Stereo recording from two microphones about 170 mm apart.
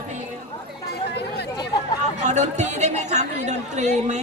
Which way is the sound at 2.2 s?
45° right (ahead or behind).